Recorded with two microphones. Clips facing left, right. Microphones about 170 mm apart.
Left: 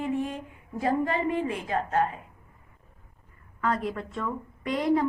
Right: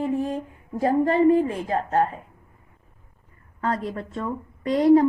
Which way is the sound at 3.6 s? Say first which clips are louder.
Right 2 dB; 30° right (ahead or behind).